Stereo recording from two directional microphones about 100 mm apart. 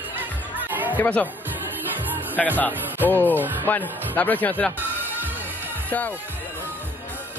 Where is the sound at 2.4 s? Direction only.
10° left (ahead or behind).